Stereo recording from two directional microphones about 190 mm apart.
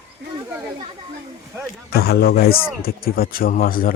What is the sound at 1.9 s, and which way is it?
A man's voice, 55° left (ahead or behind).